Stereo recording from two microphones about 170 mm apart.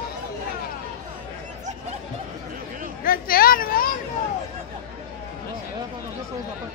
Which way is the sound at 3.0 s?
60° left (ahead or behind).